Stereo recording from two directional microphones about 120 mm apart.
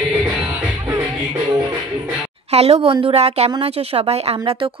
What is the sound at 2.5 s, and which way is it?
A woman's voice, 60° right (ahead or behind).